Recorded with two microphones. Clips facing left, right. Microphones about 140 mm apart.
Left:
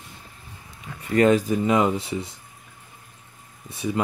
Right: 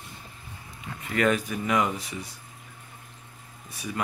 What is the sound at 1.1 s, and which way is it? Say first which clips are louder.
Speech: left 7 dB; 30° left (ahead or behind).